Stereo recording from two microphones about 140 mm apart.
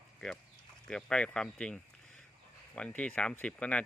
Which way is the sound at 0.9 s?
5° left (ahead or behind).